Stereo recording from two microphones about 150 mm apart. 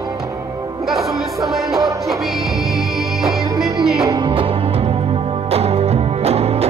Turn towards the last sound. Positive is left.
turn(degrees=-45)  # may be behind; listen again after turning